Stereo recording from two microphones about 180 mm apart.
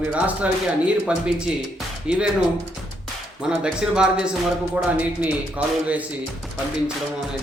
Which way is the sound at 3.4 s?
5° right (ahead or behind).